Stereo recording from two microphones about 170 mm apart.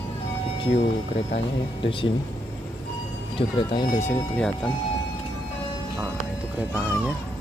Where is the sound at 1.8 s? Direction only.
30° left (ahead or behind).